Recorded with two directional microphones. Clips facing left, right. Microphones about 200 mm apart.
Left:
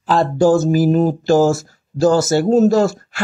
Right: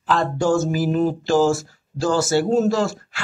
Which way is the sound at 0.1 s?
35° left (ahead or behind).